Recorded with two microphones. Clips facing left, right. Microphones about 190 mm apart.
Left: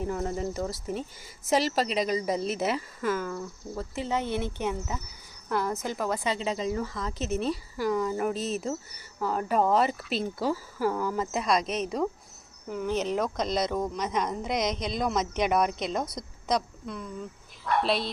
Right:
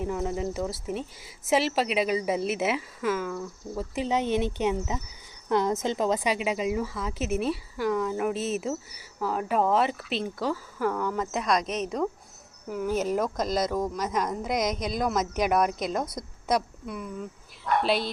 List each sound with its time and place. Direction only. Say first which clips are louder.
0.0 s a woman's voice: right 1 dB; centre (ahead or behind)
3.9 s a woman's voice: right 4 dB; 15° right (ahead or behind); by 18.1 s centre (ahead or behind)